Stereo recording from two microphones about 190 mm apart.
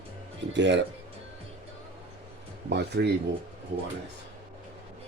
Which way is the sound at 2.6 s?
60° right (ahead or behind).